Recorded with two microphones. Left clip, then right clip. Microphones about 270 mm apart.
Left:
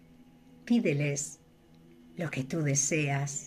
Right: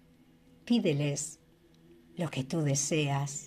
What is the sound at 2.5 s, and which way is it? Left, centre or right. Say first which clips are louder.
Speech: left 2 dB; centre.